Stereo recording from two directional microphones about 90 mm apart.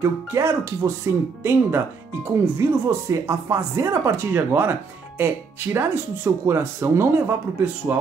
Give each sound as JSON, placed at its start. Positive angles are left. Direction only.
{"t": 0.0, "sound": "speech", "side_deg": -30}